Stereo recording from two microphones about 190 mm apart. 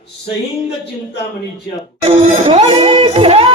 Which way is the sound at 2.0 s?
30° right (ahead or behind).